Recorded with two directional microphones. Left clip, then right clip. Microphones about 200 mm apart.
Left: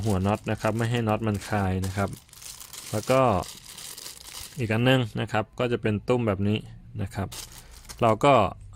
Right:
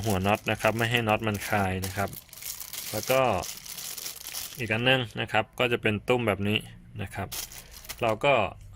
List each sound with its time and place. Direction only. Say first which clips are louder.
0.1 s a man's voice: right 1 dB; 20° left (ahead or behind)
2.9 s speech: left 2 dB; 40° left (ahead or behind)
4.5 s a man's voice: left 1 dB; 35° left (ahead or behind)
7.9 s speech: left 4 dB; 45° left (ahead or behind)